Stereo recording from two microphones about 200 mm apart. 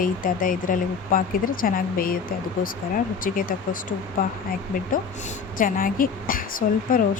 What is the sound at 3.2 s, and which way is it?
Speech, 45° left (ahead or behind).